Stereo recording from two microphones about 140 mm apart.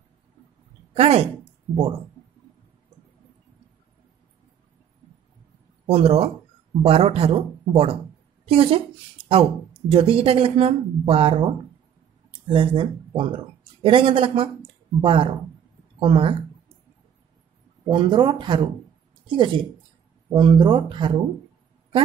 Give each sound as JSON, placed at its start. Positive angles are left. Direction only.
{"t": 0.9, "sound": "speech", "side_deg": -45}
{"t": 5.9, "sound": "a woman's voice", "side_deg": -45}
{"t": 17.8, "sound": "a woman's voice", "side_deg": -35}